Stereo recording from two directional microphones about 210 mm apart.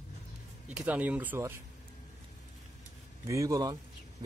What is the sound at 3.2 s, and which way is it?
Speech, 15° right (ahead or behind).